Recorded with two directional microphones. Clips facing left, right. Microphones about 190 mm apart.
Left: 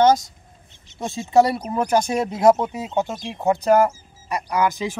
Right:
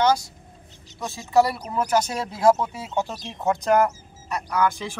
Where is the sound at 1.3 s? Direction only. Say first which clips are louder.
Left 3 dB; 20° left (ahead or behind).